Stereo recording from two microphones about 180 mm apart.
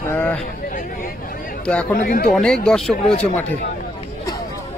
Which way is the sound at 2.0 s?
55° left (ahead or behind).